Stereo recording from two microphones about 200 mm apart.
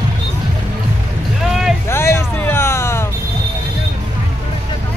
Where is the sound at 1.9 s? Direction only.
10° left (ahead or behind).